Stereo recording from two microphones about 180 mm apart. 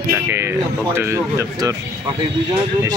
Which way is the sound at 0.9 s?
15° right (ahead or behind).